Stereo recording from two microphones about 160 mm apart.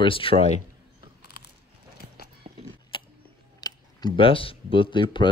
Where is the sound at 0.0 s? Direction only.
35° left (ahead or behind).